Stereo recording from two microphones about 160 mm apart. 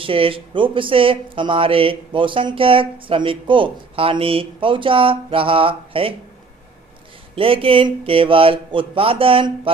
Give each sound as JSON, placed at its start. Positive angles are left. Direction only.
{"t": 0.0, "sound": "speech", "side_deg": -35}
{"t": 7.3, "sound": "speech", "side_deg": -35}